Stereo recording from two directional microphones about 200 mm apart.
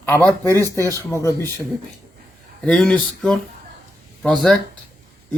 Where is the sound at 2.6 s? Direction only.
5° left (ahead or behind).